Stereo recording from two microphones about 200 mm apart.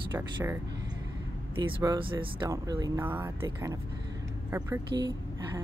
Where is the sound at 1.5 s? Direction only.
20° right (ahead or behind).